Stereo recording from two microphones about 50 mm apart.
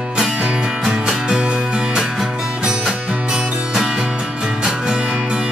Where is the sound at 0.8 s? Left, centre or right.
Centre.